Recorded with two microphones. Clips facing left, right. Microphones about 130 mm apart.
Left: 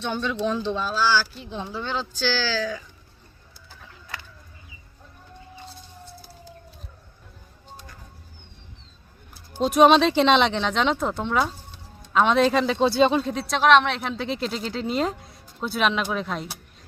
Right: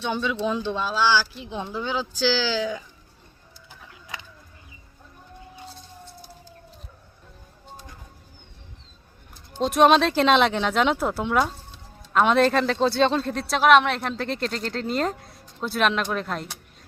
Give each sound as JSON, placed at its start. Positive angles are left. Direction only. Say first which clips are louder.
{"t": 0.0, "sound": "speech", "louder": "even", "side_deg": -5}
{"t": 3.7, "sound": "bird", "louder": "even", "side_deg": -15}
{"t": 9.6, "sound": "speech", "louder": "left 1 dB", "side_deg": 0}